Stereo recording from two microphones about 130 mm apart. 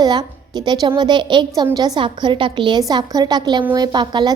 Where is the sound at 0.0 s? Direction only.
30° right (ahead or behind).